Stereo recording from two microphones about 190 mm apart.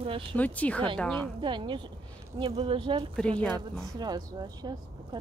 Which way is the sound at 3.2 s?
5° left (ahead or behind).